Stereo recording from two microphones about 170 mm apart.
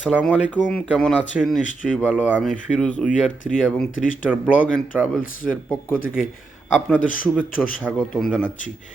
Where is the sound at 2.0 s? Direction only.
10° right (ahead or behind).